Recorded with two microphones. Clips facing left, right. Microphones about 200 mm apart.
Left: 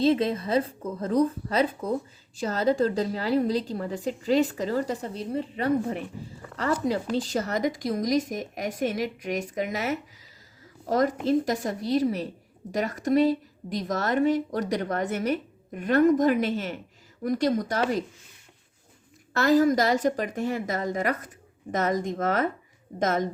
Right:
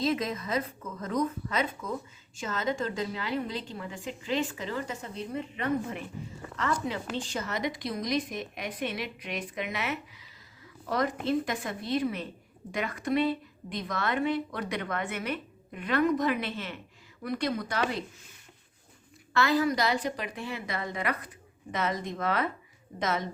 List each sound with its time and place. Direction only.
0.0 s a woman's voice: 30° left (ahead or behind)
19.3 s a woman's voice: 40° left (ahead or behind)